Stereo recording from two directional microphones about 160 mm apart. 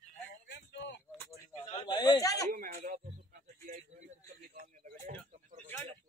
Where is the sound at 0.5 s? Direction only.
90° left.